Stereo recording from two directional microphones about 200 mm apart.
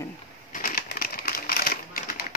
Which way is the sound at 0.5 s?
45° left (ahead or behind).